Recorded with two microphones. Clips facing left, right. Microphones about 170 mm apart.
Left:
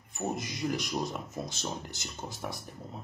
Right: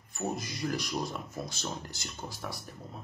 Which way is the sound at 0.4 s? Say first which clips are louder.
Left 1 dB; 20° left (ahead or behind).